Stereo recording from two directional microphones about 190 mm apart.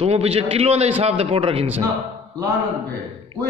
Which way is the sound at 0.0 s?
35° right (ahead or behind).